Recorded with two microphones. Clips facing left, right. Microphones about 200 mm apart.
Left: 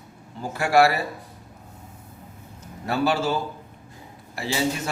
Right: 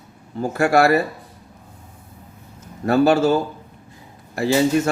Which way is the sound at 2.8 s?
45° right (ahead or behind).